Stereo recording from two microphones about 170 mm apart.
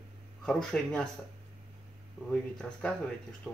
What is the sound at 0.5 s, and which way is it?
Speech, 5° left (ahead or behind).